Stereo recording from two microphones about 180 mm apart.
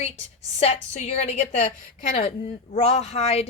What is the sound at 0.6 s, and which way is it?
Speech, 35° left (ahead or behind).